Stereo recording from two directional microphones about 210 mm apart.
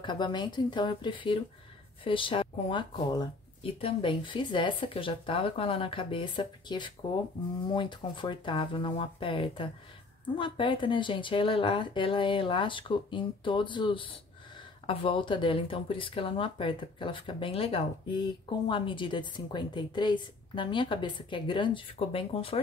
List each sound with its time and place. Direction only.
0.0 s speech: 20° left (ahead or behind)